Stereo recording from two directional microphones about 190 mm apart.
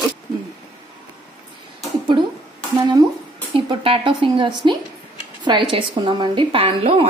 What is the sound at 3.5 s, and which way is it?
A woman's voice, 30° right (ahead or behind).